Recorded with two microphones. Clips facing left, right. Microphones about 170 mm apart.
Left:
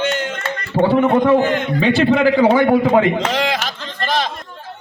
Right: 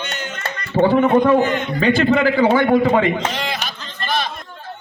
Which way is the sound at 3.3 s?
90° left.